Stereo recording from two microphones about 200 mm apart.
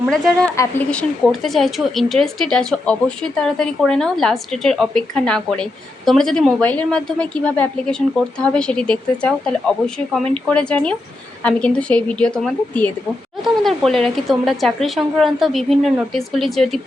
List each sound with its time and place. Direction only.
0.0 s a woman's voice: centre (ahead or behind)
0.5 s a woman's voice: 15° left (ahead or behind)
0.9 s a woman's voice: 5° left (ahead or behind)